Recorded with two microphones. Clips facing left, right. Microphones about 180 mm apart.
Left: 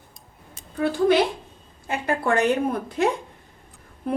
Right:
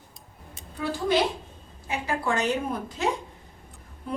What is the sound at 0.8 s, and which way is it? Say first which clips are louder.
A woman's voice: left 5 dB; 60° left (ahead or behind).